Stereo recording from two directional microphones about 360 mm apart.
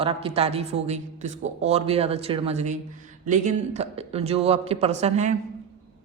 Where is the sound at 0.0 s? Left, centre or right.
Centre.